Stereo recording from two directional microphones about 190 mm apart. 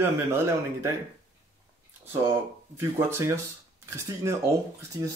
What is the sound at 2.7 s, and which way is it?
Speech, 15° right (ahead or behind).